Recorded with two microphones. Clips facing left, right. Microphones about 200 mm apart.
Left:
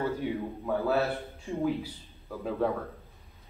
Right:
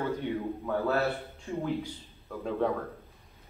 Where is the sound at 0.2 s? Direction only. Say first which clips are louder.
Even; 5° left (ahead or behind).